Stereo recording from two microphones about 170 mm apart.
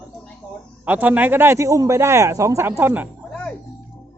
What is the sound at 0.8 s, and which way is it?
Speech, 10° right (ahead or behind).